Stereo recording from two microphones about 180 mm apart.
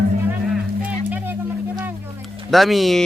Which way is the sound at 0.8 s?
10° right (ahead or behind).